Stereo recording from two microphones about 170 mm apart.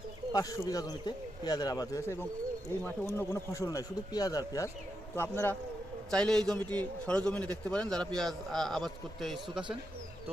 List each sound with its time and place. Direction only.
0.3 s a man's voice: 20° left (ahead or behind); by 9.6 s centre (ahead or behind)